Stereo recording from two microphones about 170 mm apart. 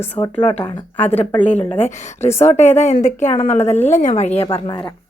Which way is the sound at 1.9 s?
45° left (ahead or behind).